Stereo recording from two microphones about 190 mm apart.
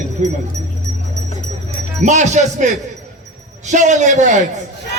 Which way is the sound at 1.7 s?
40° right (ahead or behind).